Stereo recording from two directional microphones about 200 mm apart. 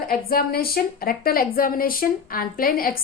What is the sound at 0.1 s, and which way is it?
Speech, 50° left (ahead or behind).